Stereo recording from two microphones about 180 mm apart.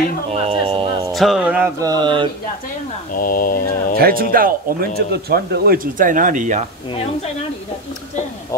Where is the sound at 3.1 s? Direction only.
50° left (ahead or behind).